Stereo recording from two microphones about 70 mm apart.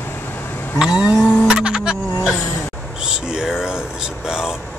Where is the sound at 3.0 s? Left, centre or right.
Centre.